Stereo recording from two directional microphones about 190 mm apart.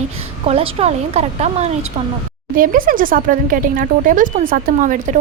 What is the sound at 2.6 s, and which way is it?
A woman's voice, 45° right (ahead or behind).